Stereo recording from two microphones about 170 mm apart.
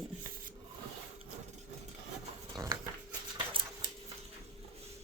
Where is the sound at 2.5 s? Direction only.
20° right (ahead or behind).